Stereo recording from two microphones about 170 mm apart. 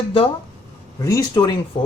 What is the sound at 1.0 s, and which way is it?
Speech, 20° left (ahead or behind).